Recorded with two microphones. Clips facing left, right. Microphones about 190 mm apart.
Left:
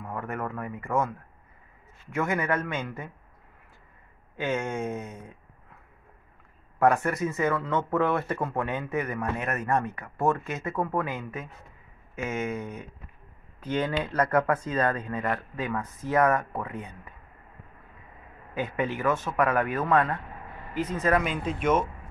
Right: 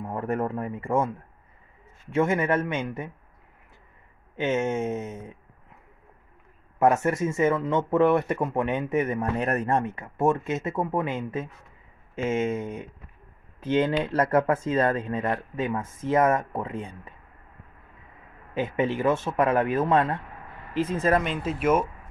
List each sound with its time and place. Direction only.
0.0 s speech: 35° right (ahead or behind)
4.4 s speech: 20° right (ahead or behind)
6.8 s speech: 20° right (ahead or behind)
9.4 s speech: 30° right (ahead or behind)
18.5 s speech: 25° right (ahead or behind)
21.2 s speech: centre (ahead or behind)